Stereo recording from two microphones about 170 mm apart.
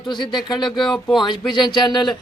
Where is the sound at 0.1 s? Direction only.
25° left (ahead or behind).